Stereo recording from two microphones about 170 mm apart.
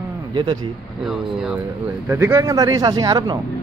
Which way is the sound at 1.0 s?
5° right (ahead or behind).